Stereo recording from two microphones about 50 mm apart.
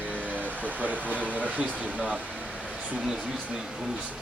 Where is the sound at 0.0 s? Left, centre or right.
Right.